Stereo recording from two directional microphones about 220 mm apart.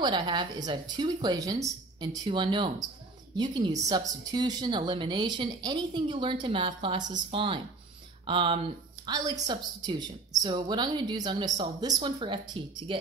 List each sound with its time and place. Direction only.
0.0 s speech: 20° right (ahead or behind)